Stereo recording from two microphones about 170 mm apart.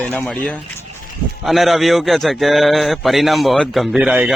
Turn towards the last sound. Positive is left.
turn(degrees=-5)  # may be behind; listen again after turning